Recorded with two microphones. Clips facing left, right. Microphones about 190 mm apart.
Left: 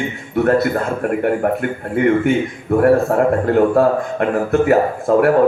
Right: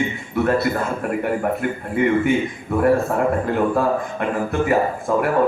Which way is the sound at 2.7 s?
55° left (ahead or behind).